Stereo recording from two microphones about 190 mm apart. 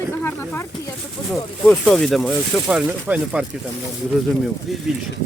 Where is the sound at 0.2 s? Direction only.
10° left (ahead or behind); by 3.4 s 5° right (ahead or behind).